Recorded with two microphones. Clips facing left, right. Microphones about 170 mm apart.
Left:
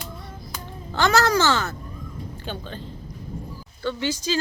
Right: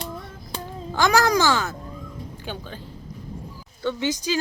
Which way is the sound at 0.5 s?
30° right (ahead or behind).